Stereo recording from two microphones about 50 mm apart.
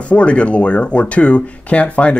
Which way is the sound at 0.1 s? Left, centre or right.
Left.